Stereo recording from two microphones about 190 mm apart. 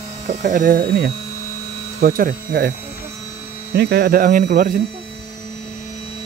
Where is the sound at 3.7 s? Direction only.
60° right (ahead or behind).